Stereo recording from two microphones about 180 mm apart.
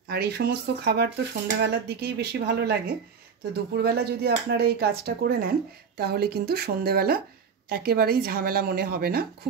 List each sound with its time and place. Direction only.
0.1 s speech: 60° right (ahead or behind)